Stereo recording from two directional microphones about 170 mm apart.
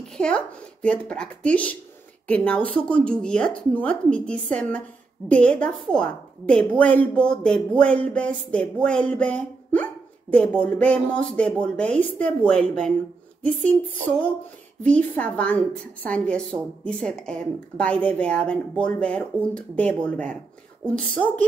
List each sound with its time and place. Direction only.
0.2 s a woman's voice: 5° left (ahead or behind)
14.8 s a woman's voice: 10° left (ahead or behind)